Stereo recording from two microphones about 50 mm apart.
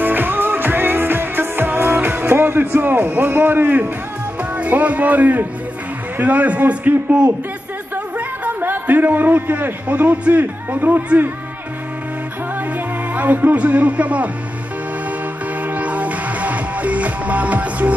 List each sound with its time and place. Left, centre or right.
0.0 s music: right
3.2 s a man's voice: right
4.4 s a man's voice: right
12.5 s speech: right
15.6 s music: right